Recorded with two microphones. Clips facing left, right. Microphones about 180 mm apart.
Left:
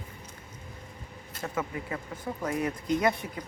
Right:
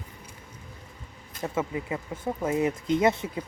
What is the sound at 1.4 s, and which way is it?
Speech, 25° right (ahead or behind).